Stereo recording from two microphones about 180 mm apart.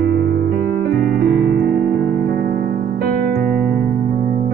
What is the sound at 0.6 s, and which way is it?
Music, 60° right (ahead or behind).